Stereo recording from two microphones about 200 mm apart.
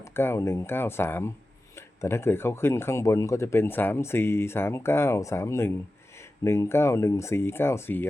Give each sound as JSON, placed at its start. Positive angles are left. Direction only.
{"t": 0.1, "sound": "speech", "side_deg": 10}